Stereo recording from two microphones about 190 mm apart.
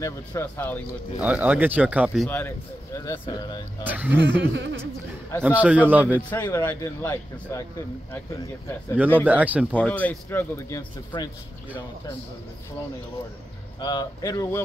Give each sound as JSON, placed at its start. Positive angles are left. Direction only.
{"t": 0.0, "sound": "speech", "side_deg": 15}
{"t": 1.2, "sound": "speech", "side_deg": -5}
{"t": 2.2, "sound": "speech", "side_deg": 10}
{"t": 3.8, "sound": "speech", "side_deg": -10}
{"t": 4.2, "sound": "speech", "side_deg": -65}
{"t": 5.4, "sound": "speech", "side_deg": -5}
{"t": 6.1, "sound": "speech", "side_deg": 10}
{"t": 9.2, "sound": "speech", "side_deg": -10}
{"t": 9.8, "sound": "speech", "side_deg": 10}
{"t": 11.1, "sound": "speech", "side_deg": 25}
{"t": 13.7, "sound": "speech", "side_deg": 20}